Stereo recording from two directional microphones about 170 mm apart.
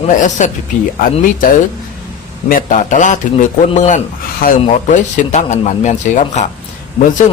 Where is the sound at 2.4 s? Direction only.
50° left (ahead or behind).